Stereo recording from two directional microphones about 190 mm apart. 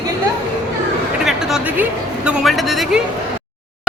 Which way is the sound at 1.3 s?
Centre (ahead or behind).